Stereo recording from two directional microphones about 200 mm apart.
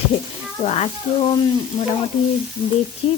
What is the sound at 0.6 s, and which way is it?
Speech, 30° left (ahead or behind).